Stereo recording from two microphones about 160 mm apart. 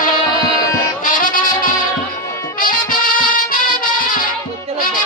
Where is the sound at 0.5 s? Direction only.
20° left (ahead or behind).